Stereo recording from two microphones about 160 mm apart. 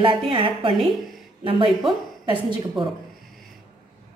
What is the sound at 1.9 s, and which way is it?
A woman's voice, 30° right (ahead or behind).